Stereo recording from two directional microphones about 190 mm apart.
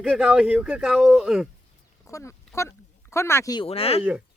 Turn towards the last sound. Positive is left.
turn(degrees=30)  # may be behind; listen again after turning